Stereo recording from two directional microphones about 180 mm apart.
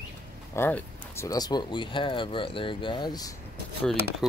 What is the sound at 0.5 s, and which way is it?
Speech, 10° left (ahead or behind).